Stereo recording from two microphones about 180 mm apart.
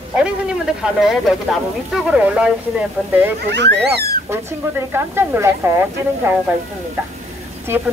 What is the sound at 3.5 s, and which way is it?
Speech, 65° right (ahead or behind).